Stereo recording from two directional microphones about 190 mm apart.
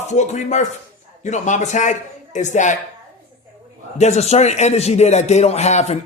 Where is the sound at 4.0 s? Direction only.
35° left (ahead or behind).